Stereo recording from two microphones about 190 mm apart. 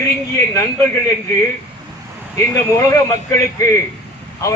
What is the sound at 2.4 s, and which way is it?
Speech, 15° left (ahead or behind).